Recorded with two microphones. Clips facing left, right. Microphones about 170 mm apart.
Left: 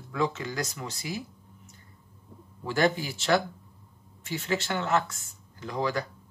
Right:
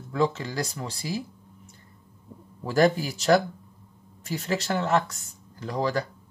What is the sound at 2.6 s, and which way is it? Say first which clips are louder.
Speech: right 4 dB; 40° right (ahead or behind).